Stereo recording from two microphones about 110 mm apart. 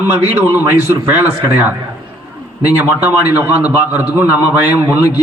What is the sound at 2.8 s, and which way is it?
A man's voice, 15° right (ahead or behind).